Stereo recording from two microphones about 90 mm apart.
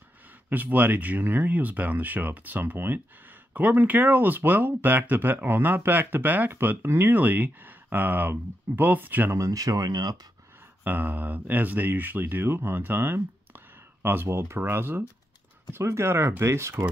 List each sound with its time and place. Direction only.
0.5 s speech: 20° right (ahead or behind)
9.4 s speech: 40° right (ahead or behind)
10.8 s speech: 20° right (ahead or behind)